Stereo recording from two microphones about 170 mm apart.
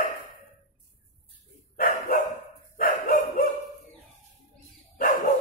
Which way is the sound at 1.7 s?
55° left (ahead or behind).